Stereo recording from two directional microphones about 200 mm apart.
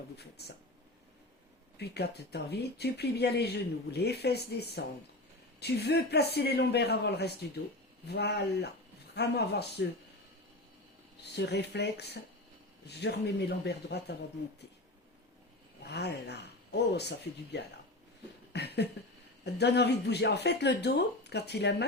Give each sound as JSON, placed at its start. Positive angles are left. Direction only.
{"t": 0.2, "sound": "speech", "side_deg": 55}
{"t": 1.8, "sound": "speech", "side_deg": 55}
{"t": 11.2, "sound": "speech", "side_deg": 55}
{"t": 15.8, "sound": "speech", "side_deg": 55}
{"t": 18.5, "sound": "a sound", "side_deg": 55}
{"t": 19.5, "sound": "speech", "side_deg": 55}